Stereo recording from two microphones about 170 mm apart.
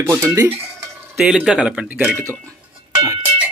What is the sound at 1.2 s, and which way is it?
Speech, 5° right (ahead or behind).